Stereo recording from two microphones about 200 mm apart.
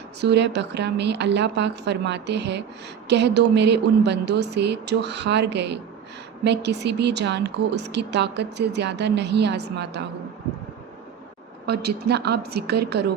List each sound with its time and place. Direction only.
0.2 s speech: 60° right (ahead or behind)
11.6 s a woman's voice: 55° right (ahead or behind)